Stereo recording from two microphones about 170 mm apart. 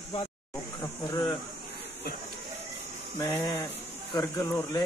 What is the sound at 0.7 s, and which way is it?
Speech, 25° left (ahead or behind).